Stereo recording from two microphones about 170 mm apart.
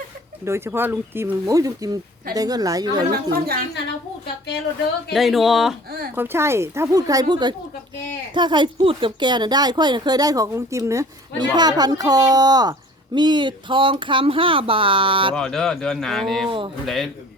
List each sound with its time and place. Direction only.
0.4 s speech: 15° right (ahead or behind)
3.1 s a woman's voice: 60° right (ahead or behind)
5.1 s speech: centre (ahead or behind)
6.1 s speech: 15° right (ahead or behind); by 15.4 s 30° right (ahead or behind)
15.4 s speech: 5° left (ahead or behind)
16.5 s speech: 30° right (ahead or behind)
16.8 s speech: centre (ahead or behind)